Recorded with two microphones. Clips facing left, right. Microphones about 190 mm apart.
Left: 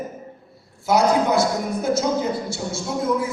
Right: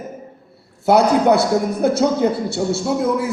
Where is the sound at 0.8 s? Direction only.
65° right (ahead or behind).